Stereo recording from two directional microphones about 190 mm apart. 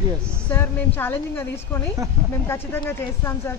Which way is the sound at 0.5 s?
10° left (ahead or behind).